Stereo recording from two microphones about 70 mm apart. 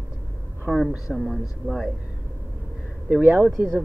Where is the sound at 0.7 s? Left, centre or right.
Centre.